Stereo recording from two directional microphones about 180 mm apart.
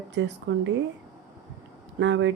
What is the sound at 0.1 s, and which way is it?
Speech, 80° right.